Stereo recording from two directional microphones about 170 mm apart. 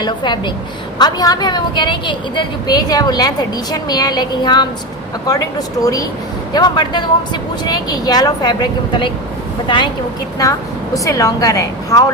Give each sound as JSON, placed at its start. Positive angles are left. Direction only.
{"t": 0.0, "sound": "a woman's voice", "side_deg": 25}
{"t": 10.9, "sound": "a woman's voice", "side_deg": 20}